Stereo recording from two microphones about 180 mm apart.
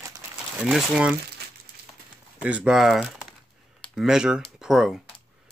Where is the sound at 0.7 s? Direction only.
5° right (ahead or behind).